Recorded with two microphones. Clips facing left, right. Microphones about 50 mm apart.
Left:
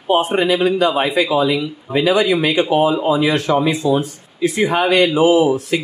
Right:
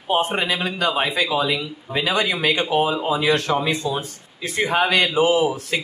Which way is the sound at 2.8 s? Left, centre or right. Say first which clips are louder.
Left 5 dB; left.